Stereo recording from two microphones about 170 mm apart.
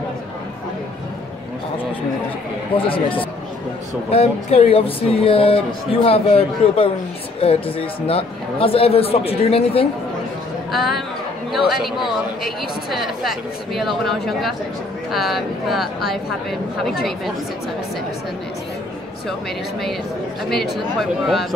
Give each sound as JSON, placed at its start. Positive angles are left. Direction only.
{"t": 2.7, "sound": "speech", "side_deg": 30}
{"t": 10.7, "sound": "speech", "side_deg": 0}
{"t": 21.0, "sound": "speech", "side_deg": 0}